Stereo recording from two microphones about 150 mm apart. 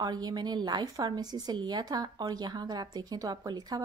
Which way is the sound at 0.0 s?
25° right (ahead or behind).